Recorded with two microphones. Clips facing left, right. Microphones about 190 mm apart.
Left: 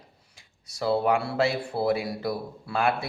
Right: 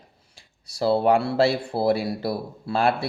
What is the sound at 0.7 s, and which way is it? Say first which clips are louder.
Speech: right 4 dB; 35° right (ahead or behind).